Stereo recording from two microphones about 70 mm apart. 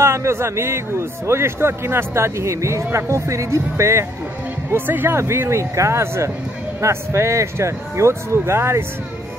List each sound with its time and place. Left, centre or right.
0.0 s a man's voice: right
4.7 s a man's voice: right